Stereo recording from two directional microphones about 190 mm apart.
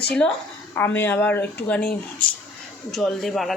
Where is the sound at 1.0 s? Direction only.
10° left (ahead or behind).